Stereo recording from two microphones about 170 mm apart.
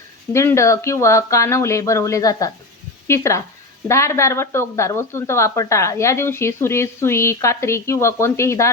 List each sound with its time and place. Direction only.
0.3 s speech: 15° left (ahead or behind)